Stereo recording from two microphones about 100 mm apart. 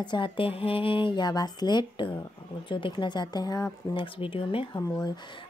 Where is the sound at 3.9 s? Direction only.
60° left (ahead or behind).